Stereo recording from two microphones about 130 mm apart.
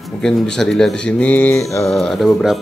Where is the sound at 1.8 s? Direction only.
5° left (ahead or behind).